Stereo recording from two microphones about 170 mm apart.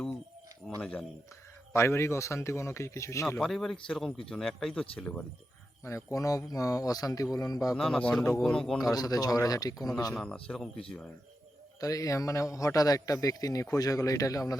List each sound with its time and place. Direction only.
0.8 s speech: 5° left (ahead or behind)
3.2 s speech: 5° left (ahead or behind)
5.8 s a man's voice: 15° left (ahead or behind)
7.8 s speech: 5° left (ahead or behind)
8.8 s a man's voice: 20° left (ahead or behind)
10.2 s speech: 5° left (ahead or behind)
11.8 s a man's voice: 20° left (ahead or behind)